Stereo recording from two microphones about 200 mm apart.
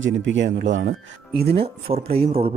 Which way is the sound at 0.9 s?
50° right (ahead or behind).